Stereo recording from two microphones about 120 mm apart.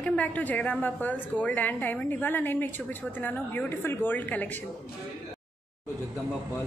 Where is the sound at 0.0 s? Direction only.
10° left (ahead or behind).